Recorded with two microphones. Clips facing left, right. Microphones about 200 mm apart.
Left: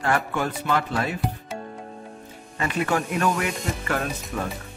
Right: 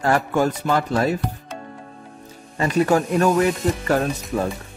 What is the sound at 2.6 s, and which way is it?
Speech, 40° right (ahead or behind).